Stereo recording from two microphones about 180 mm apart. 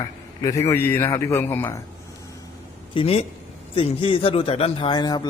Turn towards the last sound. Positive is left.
turn(degrees=25)  # may be behind; listen again after turning